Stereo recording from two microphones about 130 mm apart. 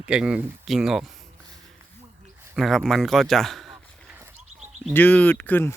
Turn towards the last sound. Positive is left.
turn(degrees=15)  # may be behind; listen again after turning